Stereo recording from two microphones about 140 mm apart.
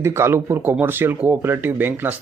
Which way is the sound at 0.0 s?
20° right (ahead or behind).